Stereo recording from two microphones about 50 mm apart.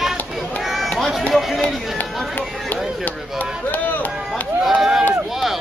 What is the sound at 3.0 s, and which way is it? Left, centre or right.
Chop, left.